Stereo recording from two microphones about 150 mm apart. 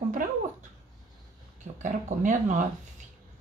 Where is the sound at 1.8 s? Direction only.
55° right (ahead or behind).